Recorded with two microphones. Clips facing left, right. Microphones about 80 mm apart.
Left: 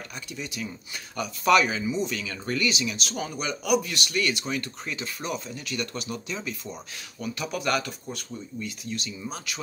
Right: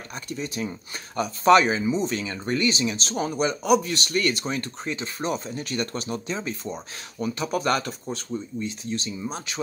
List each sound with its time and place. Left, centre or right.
0.3 s speech: right